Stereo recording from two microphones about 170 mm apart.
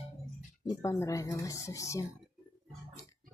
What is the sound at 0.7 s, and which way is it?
Speech, 20° left (ahead or behind).